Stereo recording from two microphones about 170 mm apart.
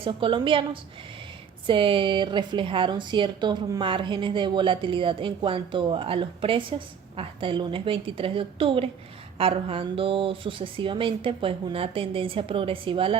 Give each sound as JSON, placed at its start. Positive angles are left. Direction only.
{"t": 0.0, "sound": "speech", "side_deg": -30}